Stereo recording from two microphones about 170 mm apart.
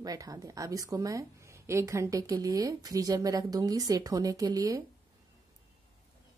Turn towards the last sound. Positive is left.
turn(degrees=-20)  # may be behind; listen again after turning